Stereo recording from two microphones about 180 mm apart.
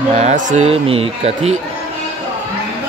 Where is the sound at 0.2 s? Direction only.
40° right (ahead or behind).